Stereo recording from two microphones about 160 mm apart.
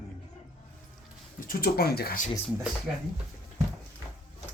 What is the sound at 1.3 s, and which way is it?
Speech, 65° left (ahead or behind).